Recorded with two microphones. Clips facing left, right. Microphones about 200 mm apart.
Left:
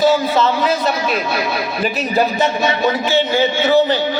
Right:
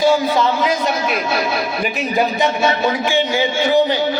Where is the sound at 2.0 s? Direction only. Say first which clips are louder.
Left 1 dB; 15° right (ahead or behind).